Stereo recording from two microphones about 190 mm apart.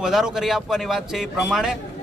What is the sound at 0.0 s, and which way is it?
Speech, centre (ahead or behind).